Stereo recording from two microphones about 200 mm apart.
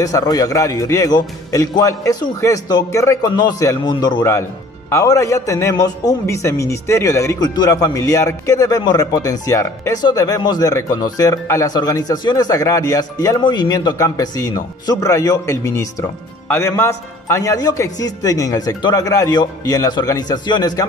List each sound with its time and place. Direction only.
0.0 s speech: 20° left (ahead or behind)